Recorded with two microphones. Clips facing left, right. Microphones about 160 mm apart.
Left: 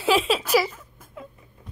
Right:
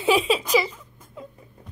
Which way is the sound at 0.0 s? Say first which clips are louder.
Right 1 dB; centre (ahead or behind).